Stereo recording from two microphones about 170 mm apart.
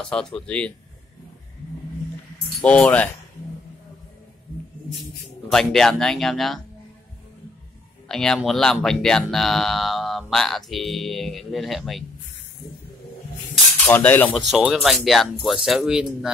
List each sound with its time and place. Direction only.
0.0 s speech: 5° left (ahead or behind)
2.6 s cutlery: 5° left (ahead or behind)
5.5 s speech: centre (ahead or behind)
8.1 s speech: 5° left (ahead or behind)
13.8 s cutlery: 10° left (ahead or behind)
14.5 s speech: centre (ahead or behind)